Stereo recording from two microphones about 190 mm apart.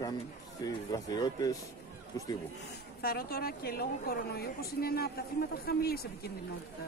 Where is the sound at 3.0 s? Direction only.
55° left (ahead or behind).